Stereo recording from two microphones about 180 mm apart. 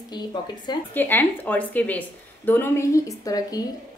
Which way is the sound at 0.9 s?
10° left (ahead or behind).